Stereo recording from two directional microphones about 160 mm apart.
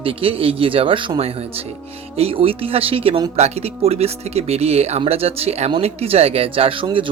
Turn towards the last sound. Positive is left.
turn(degrees=-30)  # may be behind; listen again after turning